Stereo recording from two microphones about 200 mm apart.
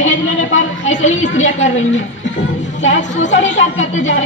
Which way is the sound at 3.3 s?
70° left (ahead or behind).